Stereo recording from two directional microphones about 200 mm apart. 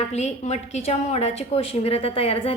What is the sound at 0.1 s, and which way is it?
A woman's voice, 35° left (ahead or behind).